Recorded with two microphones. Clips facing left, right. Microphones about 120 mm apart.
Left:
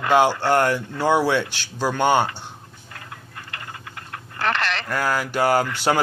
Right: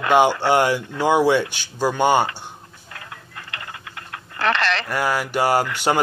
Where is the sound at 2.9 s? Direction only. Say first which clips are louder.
Right 1 dB; 90° right.